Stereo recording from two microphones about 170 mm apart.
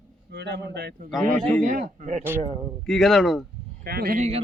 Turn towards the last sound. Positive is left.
turn(degrees=-40)  # may be behind; listen again after turning